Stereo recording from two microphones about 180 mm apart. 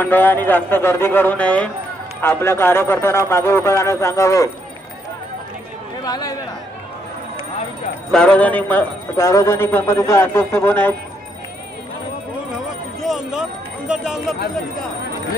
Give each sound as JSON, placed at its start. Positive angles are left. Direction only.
{"t": 0.0, "sound": "a man's voice", "side_deg": 10}
{"t": 6.0, "sound": "speech", "side_deg": 20}
{"t": 8.1, "sound": "a man's voice", "side_deg": 5}
{"t": 13.0, "sound": "a sound", "side_deg": -5}